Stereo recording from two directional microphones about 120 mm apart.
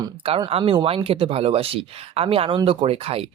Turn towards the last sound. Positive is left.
turn(degrees=-55)  # may be behind; listen again after turning